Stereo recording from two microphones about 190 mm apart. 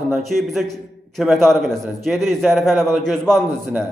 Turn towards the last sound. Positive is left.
turn(degrees=0)  # may be behind; listen again after turning